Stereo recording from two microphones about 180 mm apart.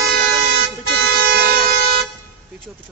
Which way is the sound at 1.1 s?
55° right (ahead or behind).